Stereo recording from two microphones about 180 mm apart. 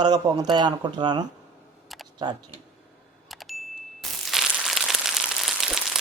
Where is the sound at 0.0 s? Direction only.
25° right (ahead or behind).